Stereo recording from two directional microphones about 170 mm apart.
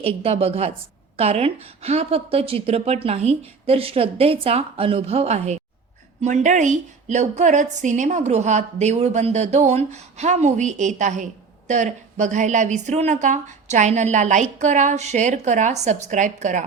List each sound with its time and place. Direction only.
0.0 s a woman's voice: 35° right (ahead or behind)